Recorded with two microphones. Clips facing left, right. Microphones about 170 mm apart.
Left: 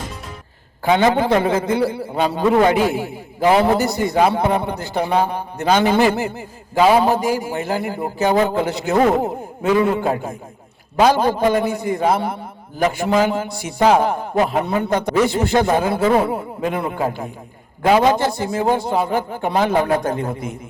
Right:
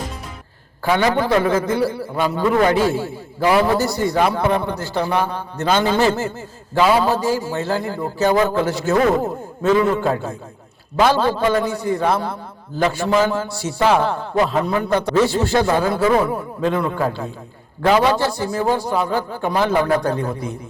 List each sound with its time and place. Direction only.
0.9 s a man's voice: 20° left (ahead or behind)